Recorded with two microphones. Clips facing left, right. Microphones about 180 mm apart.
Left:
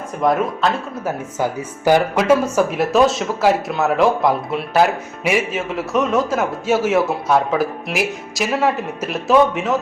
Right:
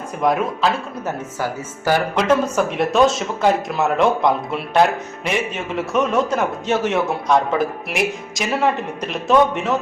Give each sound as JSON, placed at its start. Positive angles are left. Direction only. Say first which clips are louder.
{"t": 0.2, "sound": "speech", "louder": "left 1 dB", "side_deg": 0}
{"t": 1.4, "sound": "speech", "louder": "left 3 dB", "side_deg": 15}